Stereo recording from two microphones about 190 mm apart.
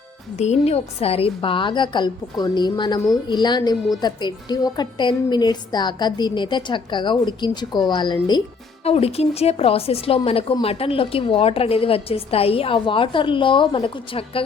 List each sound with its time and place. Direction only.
0.3 s a woman's voice: 35° left (ahead or behind)